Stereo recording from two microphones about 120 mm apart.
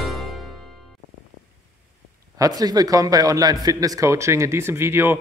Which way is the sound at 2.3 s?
30° right (ahead or behind).